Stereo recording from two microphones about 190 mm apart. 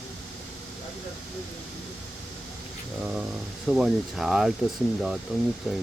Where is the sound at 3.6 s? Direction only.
Centre (ahead or behind).